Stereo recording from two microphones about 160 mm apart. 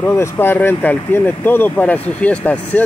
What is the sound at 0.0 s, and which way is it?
Speech, 15° left (ahead or behind).